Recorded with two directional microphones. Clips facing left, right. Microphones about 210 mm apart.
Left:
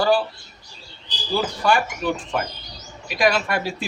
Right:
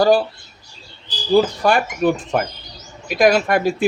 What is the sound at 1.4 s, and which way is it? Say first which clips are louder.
Speech: right 5 dB; 45° right (ahead or behind).